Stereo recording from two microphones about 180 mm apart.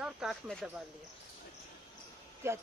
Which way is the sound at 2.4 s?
15° right (ahead or behind).